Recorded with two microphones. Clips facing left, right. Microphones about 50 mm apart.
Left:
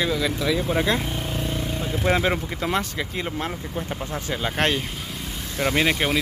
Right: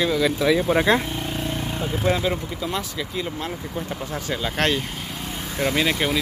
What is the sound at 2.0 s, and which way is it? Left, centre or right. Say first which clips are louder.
Speech: left 1 dB; left.